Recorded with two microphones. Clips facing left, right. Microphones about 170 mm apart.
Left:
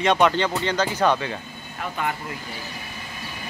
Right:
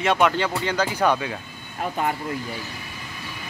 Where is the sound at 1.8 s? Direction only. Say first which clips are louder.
Right 3 dB; 35° right (ahead or behind).